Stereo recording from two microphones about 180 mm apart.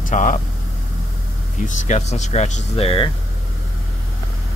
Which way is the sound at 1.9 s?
40° left (ahead or behind).